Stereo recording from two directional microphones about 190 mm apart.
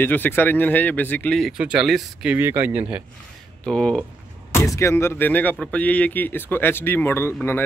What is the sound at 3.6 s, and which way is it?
Speech, 5° left (ahead or behind).